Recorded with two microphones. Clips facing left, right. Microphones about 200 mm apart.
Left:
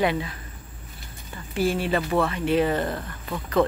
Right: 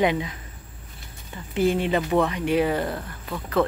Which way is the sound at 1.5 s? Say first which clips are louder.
Right 2 dB; 20° right (ahead or behind).